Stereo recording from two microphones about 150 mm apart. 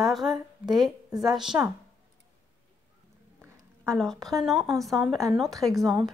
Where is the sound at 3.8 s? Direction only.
5° left (ahead or behind).